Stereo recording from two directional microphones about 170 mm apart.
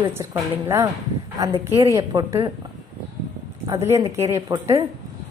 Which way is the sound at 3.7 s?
15° right (ahead or behind).